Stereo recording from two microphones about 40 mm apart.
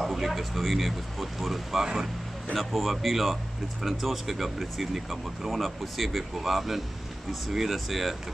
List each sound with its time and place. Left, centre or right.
0.0 s speech: centre